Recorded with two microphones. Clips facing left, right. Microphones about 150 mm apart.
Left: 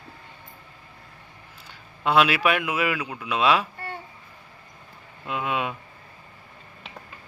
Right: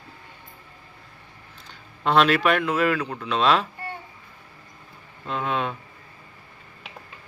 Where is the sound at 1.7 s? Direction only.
5° left (ahead or behind).